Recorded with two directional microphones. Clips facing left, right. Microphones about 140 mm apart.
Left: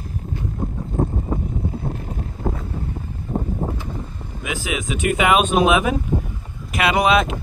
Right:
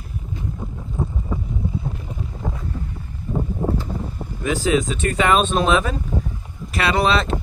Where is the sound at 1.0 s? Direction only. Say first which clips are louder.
Left 5 dB; 50° left (ahead or behind).